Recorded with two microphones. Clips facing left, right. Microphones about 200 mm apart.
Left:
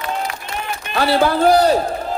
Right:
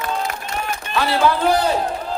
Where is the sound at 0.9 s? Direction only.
40° left (ahead or behind).